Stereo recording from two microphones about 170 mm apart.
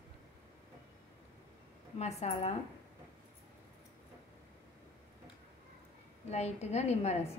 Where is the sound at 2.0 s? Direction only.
40° left (ahead or behind).